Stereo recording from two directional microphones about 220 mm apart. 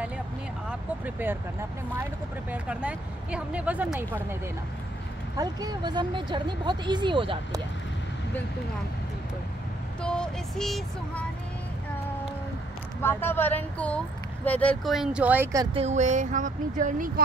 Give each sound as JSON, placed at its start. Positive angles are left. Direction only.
{"t": 0.7, "sound": "speech", "side_deg": -10}
{"t": 2.5, "sound": "speech", "side_deg": -5}
{"t": 5.4, "sound": "speech", "side_deg": -15}
{"t": 10.0, "sound": "speech", "side_deg": 5}
{"t": 13.0, "sound": "speech", "side_deg": 10}
{"t": 15.8, "sound": "speech", "side_deg": -30}